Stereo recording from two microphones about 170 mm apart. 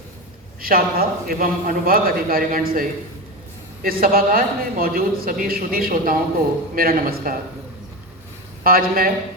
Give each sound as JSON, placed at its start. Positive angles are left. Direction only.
{"t": 0.6, "sound": "a man's voice", "side_deg": -60}
{"t": 3.8, "sound": "a man's voice", "side_deg": -60}
{"t": 8.6, "sound": "a man's voice", "side_deg": -60}